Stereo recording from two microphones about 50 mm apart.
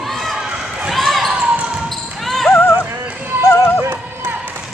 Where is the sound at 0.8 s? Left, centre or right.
Centre.